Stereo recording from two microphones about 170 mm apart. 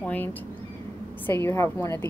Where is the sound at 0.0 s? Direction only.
10° left (ahead or behind).